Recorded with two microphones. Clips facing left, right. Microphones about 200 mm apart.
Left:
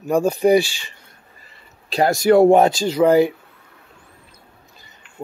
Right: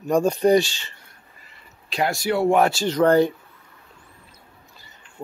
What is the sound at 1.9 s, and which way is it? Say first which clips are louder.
Speech: left 8 dB; 40° left (ahead or behind).